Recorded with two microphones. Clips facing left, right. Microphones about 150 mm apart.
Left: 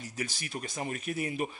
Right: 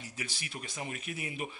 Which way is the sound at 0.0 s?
45° left (ahead or behind).